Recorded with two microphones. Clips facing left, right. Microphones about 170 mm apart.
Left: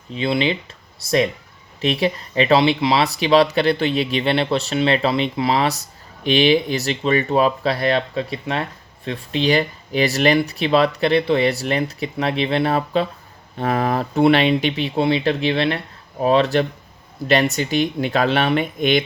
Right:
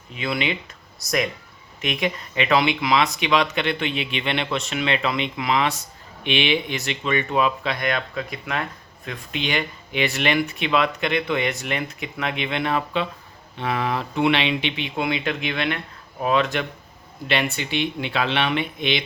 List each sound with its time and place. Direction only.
0.1 s speech: 30° left (ahead or behind); by 19.0 s 45° left (ahead or behind)